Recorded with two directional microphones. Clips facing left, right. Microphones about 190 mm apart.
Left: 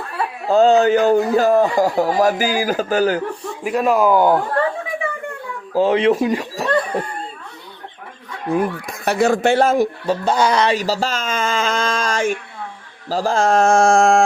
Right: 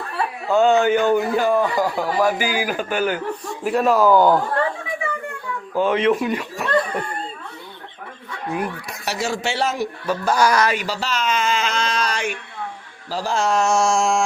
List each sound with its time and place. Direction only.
0.4 s a man's voice: 35° left (ahead or behind)
3.6 s speech: 5° left (ahead or behind)
5.7 s speech: 30° left (ahead or behind)
8.5 s speech: 50° left (ahead or behind)
10.1 s speech: 25° left (ahead or behind)
10.8 s a sound: 40° left (ahead or behind)
13.1 s speech: 45° left (ahead or behind)